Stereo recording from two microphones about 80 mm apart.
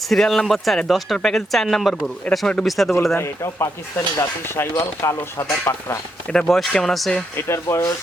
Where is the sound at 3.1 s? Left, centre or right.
Left.